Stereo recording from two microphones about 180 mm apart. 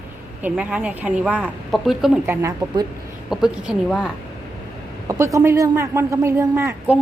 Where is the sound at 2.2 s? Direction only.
15° right (ahead or behind).